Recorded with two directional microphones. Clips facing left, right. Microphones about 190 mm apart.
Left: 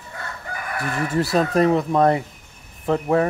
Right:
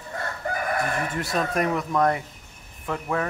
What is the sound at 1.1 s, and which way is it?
Speech, 35° left (ahead or behind).